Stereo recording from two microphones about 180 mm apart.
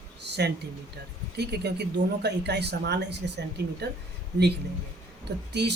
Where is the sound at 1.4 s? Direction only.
65° right (ahead or behind).